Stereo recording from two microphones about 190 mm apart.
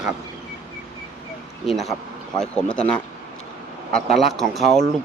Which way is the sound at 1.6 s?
Centre (ahead or behind).